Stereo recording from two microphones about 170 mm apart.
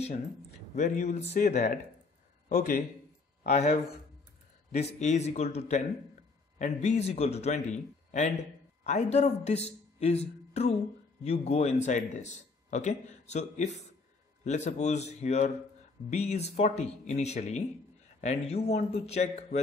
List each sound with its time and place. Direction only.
0.7 s a man's voice: 45° left (ahead or behind)
3.4 s a man's voice: 40° left (ahead or behind)
5.0 s a man's voice: 40° left (ahead or behind)